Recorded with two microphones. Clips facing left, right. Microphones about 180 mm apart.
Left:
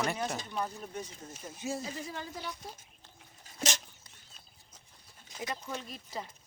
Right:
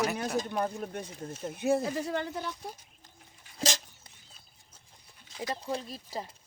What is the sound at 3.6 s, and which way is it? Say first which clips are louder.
Dog: right 3 dB; 35° right (ahead or behind).